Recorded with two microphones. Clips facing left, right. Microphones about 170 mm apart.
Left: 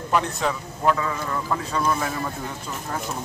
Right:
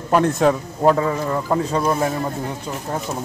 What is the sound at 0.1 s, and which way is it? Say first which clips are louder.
A man's voice: right 8 dB; 50° right (ahead or behind).